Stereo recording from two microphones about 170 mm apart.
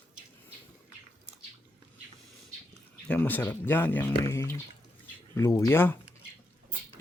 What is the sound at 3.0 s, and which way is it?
Speech, 10° left (ahead or behind).